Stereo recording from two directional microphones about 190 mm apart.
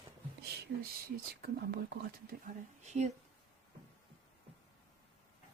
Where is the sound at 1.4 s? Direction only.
55° right (ahead or behind); by 3.1 s 35° right (ahead or behind).